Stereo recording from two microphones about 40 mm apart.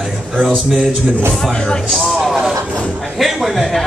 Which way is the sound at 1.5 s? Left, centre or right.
Left.